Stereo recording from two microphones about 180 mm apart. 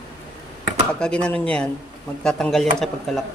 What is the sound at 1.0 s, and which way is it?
Speech, 5° left (ahead or behind).